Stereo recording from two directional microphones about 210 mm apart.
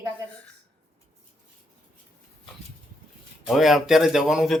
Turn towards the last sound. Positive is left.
turn(degrees=0)  # may be behind; listen again after turning